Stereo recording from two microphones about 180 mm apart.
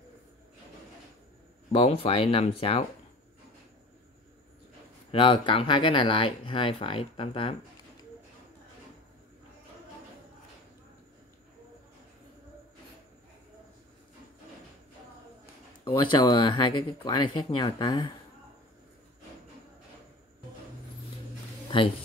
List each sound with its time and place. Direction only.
1.7 s speech: 30° left (ahead or behind)
5.1 s speech: 30° left (ahead or behind)
15.8 s speech: 25° left (ahead or behind)